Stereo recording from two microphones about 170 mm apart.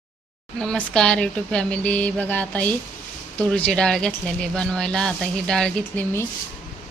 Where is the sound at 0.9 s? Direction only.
5° left (ahead or behind).